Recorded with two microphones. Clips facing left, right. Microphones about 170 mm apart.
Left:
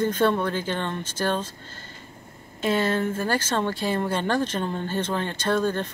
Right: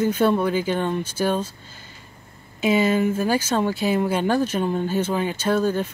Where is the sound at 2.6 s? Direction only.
10° right (ahead or behind).